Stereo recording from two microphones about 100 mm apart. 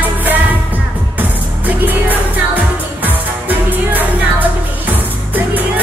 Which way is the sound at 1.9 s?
15° right (ahead or behind).